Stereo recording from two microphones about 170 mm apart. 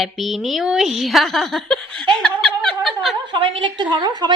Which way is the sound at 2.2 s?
5° left (ahead or behind).